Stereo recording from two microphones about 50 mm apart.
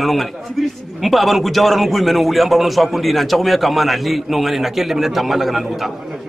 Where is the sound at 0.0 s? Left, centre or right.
Centre.